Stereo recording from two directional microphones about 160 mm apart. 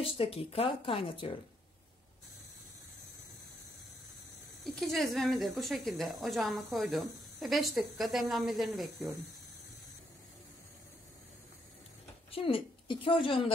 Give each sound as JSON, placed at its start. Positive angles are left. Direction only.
{"t": 0.0, "sound": "speech", "side_deg": 35}
{"t": 4.7, "sound": "a woman's voice", "side_deg": 0}
{"t": 12.3, "sound": "a woman's voice", "side_deg": 35}